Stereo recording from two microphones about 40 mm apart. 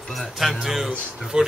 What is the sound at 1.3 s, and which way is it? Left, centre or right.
Speech, right.